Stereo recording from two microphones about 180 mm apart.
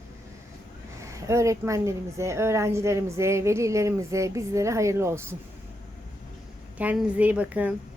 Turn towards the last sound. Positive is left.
turn(degrees=-10)  # may be behind; listen again after turning